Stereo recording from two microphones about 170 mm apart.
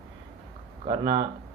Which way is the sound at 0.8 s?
30° right (ahead or behind).